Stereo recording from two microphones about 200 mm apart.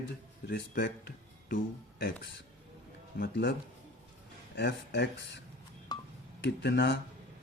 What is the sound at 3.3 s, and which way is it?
Speech, 65° left (ahead or behind).